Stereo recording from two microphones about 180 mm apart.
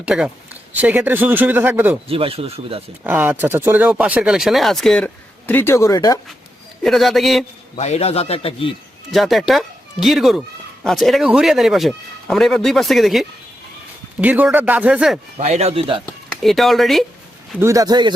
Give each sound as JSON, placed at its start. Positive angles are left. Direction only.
{"t": 0.0, "sound": "speech", "side_deg": -5}
{"t": 2.0, "sound": "speech", "side_deg": -30}
{"t": 3.0, "sound": "speech", "side_deg": -10}
{"t": 6.8, "sound": "speech", "side_deg": 0}
{"t": 7.8, "sound": "a man's voice", "side_deg": 35}
{"t": 9.1, "sound": "speech", "side_deg": 0}
{"t": 15.4, "sound": "speech", "side_deg": -40}
{"t": 16.0, "sound": "speech", "side_deg": 5}
{"t": 17.6, "sound": "speech", "side_deg": -15}